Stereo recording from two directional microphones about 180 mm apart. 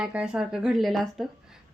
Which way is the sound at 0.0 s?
5° right (ahead or behind).